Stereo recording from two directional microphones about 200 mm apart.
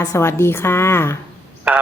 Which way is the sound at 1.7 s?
5° right (ahead or behind).